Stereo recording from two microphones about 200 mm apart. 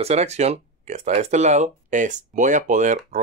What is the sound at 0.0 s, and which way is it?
Speech, 35° right (ahead or behind).